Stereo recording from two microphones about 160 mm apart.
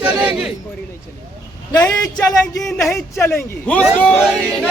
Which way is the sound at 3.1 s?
15° left (ahead or behind).